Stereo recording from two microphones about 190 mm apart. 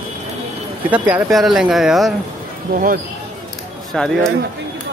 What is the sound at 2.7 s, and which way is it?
Speech, 50° right (ahead or behind).